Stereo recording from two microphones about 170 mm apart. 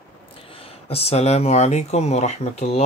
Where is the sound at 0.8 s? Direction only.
35° left (ahead or behind).